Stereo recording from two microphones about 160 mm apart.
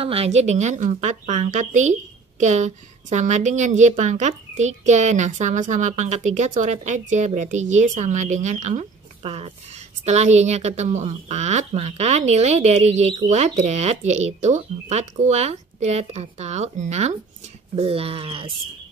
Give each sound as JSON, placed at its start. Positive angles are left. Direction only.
{"t": 0.0, "sound": "a woman's voice", "side_deg": -40}